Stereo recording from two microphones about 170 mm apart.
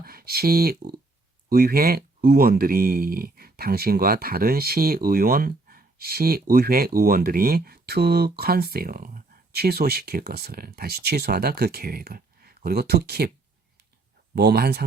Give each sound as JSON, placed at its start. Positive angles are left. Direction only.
{"t": 0.0, "sound": "speech", "side_deg": -60}
{"t": 14.3, "sound": "speech", "side_deg": -70}